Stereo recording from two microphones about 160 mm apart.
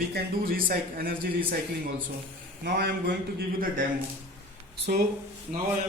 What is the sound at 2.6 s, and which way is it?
A man's voice, 75° right (ahead or behind).